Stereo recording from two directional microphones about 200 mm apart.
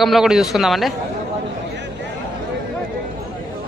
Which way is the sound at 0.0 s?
Centre (ahead or behind).